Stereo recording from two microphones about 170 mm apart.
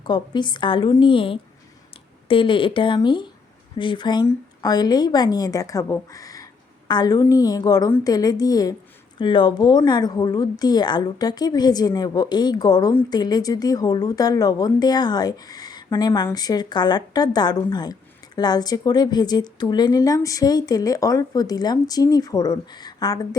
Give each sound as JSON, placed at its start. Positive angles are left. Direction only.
{"t": 0.0, "sound": "speech", "side_deg": 25}